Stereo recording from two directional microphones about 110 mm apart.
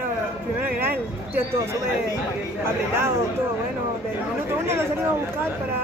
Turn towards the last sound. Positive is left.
turn(degrees=-25)  # may be behind; listen again after turning